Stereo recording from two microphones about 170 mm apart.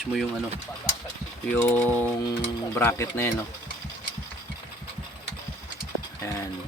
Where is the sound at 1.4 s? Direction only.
10° left (ahead or behind).